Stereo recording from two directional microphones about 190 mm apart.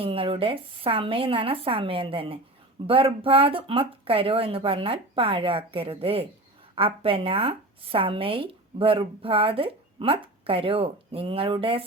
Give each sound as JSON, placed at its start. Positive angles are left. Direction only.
{"t": 0.0, "sound": "speech", "side_deg": -30}